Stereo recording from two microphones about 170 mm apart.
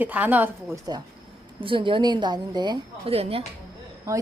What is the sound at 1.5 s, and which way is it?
A woman's voice, 30° right (ahead or behind).